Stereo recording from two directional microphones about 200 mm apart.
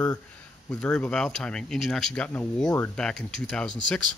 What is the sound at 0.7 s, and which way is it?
Speech, 5° left (ahead or behind).